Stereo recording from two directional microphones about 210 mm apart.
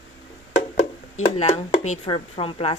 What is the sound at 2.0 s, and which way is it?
Speech, 25° left (ahead or behind).